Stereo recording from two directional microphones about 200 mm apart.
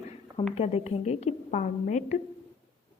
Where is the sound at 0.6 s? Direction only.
30° left (ahead or behind).